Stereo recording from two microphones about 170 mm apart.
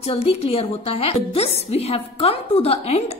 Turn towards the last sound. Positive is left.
turn(degrees=40)  # may be behind; listen again after turning